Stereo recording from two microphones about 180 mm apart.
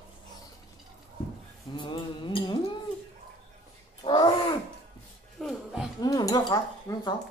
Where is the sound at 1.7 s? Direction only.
25° left (ahead or behind).